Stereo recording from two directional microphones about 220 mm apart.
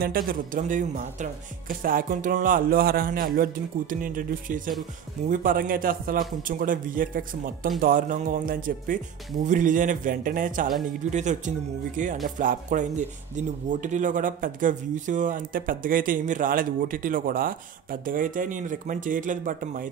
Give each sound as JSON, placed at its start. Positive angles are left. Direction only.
{"t": 0.0, "sound": "speech", "side_deg": -40}